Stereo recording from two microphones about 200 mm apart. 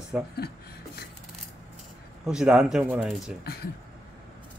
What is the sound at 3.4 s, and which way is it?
Speech, 50° left (ahead or behind).